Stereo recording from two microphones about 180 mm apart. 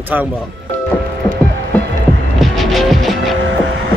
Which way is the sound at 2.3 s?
Centre (ahead or behind).